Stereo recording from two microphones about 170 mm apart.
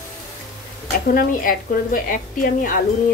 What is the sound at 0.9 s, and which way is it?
A woman's voice, 55° left (ahead or behind).